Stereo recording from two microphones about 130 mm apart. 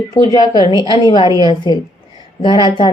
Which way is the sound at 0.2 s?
35° left (ahead or behind).